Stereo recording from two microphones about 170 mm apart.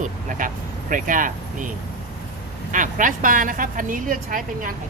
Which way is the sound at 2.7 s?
50° right (ahead or behind).